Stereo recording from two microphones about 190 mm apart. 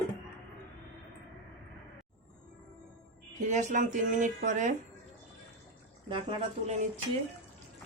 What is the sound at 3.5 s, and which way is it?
Speech, 40° right (ahead or behind).